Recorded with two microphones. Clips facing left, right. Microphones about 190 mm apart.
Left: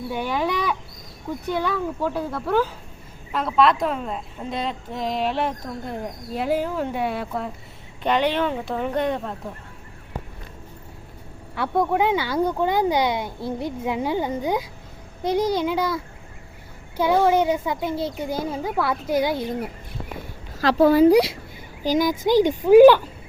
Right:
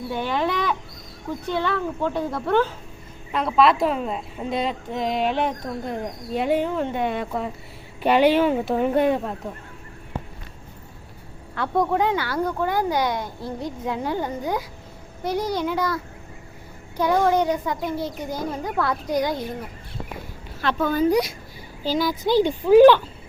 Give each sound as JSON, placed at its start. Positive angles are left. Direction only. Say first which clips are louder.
{"t": 0.1, "sound": "a sound", "louder": "even", "side_deg": 10}
{"t": 1.5, "sound": "a woman's voice", "louder": "even", "side_deg": 10}
{"t": 8.0, "sound": "a woman's voice", "louder": "right 4 dB", "side_deg": -10}
{"t": 11.5, "sound": "a child's voice", "louder": "even", "side_deg": 5}
{"t": 17.0, "sound": "a woman's voice", "louder": "left 1 dB", "side_deg": 10}
{"t": 20.7, "sound": "speech", "louder": "left 6 dB", "side_deg": 35}
{"t": 21.8, "sound": "speech", "louder": "left 2 dB", "side_deg": 15}